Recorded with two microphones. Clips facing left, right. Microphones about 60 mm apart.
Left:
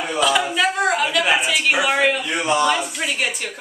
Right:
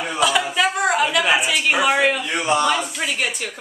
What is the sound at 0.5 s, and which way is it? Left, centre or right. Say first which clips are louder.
A woman's voice: even; centre.